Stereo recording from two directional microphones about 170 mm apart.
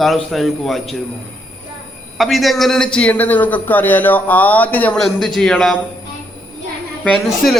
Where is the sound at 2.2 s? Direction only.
Centre (ahead or behind).